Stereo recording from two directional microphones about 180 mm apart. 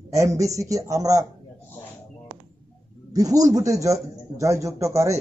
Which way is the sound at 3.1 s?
20° right (ahead or behind).